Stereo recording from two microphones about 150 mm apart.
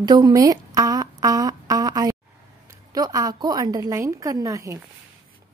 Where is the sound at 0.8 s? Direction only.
25° right (ahead or behind).